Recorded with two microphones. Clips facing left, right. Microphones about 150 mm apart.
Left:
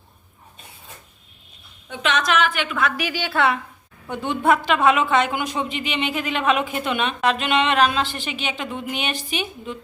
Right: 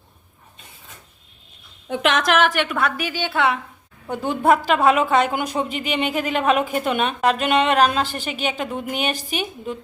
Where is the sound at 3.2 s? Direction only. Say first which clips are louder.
Even; 20° right (ahead or behind).